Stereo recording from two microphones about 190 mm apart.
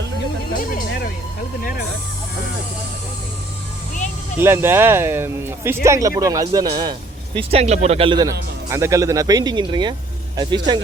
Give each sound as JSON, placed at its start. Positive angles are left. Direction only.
{"t": 4.4, "sound": "speech", "side_deg": -10}
{"t": 7.3, "sound": "speech", "side_deg": -30}